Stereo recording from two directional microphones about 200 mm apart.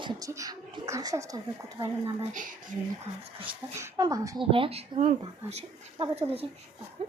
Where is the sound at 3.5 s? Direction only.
15° right (ahead or behind).